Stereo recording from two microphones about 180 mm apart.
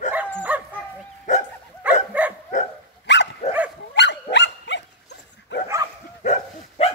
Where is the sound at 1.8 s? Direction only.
10° right (ahead or behind).